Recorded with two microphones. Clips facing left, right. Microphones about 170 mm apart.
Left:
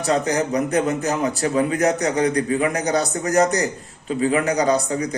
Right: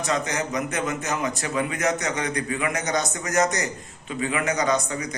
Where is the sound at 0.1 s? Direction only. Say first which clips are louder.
Left 7 dB; 35° left (ahead or behind).